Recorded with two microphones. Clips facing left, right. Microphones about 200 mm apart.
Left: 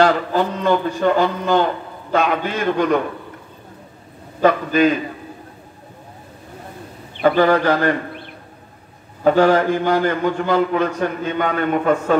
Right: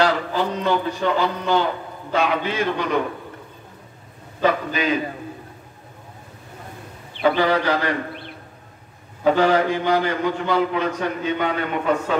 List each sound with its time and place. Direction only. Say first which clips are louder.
0.0 s a man's voice: left 4 dB; 50° left (ahead or behind)
4.4 s a man's voice: left 6 dB; 50° left (ahead or behind)
7.2 s a man's voice: left 4 dB; 50° left (ahead or behind)
9.2 s a man's voice: left 3 dB; 50° left (ahead or behind)